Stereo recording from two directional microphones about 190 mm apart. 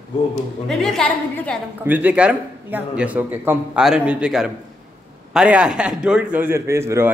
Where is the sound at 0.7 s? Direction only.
Centre (ahead or behind).